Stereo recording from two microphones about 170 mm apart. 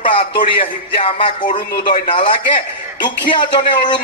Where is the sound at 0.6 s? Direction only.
30° left (ahead or behind).